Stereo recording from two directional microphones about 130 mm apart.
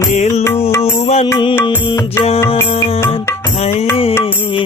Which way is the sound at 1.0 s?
50° left (ahead or behind).